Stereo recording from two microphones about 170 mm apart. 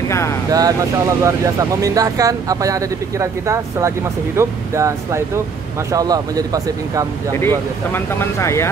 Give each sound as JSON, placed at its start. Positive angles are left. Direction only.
{"t": 0.5, "sound": "speech", "side_deg": -20}
{"t": 7.3, "sound": "speech", "side_deg": 15}